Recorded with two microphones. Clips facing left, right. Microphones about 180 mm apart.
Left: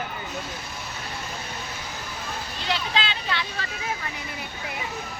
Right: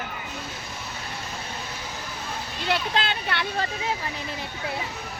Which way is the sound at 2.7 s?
55° right (ahead or behind).